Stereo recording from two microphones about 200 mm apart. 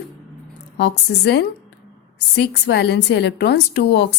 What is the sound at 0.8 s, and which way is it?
A woman's voice, 55° left (ahead or behind).